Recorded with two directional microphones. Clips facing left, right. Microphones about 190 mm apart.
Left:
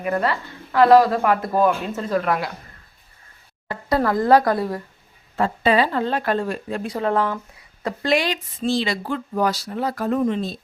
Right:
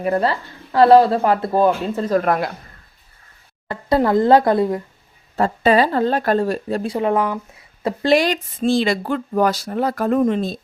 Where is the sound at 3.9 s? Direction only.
25° right (ahead or behind).